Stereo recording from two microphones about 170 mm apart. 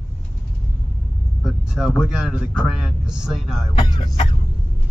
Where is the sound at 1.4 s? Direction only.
Centre (ahead or behind).